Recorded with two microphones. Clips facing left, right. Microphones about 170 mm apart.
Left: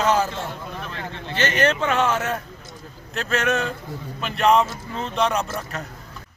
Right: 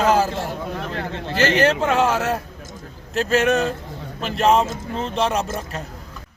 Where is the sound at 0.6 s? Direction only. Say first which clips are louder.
Right 5 dB; 65° right (ahead or behind).